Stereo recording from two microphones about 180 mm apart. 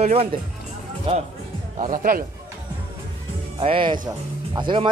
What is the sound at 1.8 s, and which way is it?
Speech, 50° right (ahead or behind).